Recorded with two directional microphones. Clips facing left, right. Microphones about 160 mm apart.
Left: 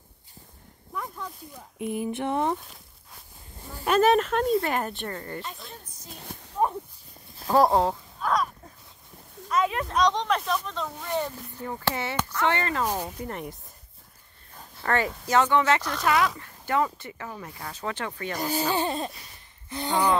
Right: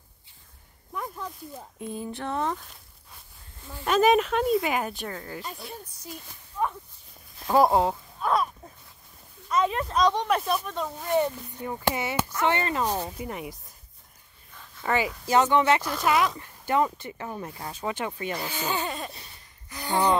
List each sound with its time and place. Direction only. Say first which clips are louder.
0.9 s speech: right 1 dB; 10° right (ahead or behind)
1.8 s a sound: left 5 dB; 15° left (ahead or behind)
3.8 s speech: even; centre (ahead or behind)
6.0 s speech: left 2 dB; 55° left (ahead or behind)
6.6 s a sound: left 3 dB; 40° left (ahead or behind)
7.3 s speech: even; centre (ahead or behind)
9.5 s speech: even; centre (ahead or behind); by 12.9 s 15° right (ahead or behind)
13.2 s speech: even; 5° right (ahead or behind)
14.8 s speech: even; 5° right (ahead or behind)
15.2 s speech: right 1 dB; 20° right (ahead or behind)
18.4 s speech: left 7 dB; 35° left (ahead or behind)
19.7 s a sound: left 1 dB; 20° left (ahead or behind)